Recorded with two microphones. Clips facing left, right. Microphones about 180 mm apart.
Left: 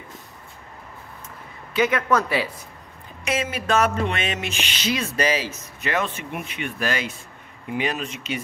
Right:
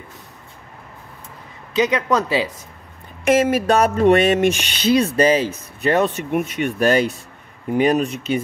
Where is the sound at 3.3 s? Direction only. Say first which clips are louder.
Right 9 dB; 45° right (ahead or behind).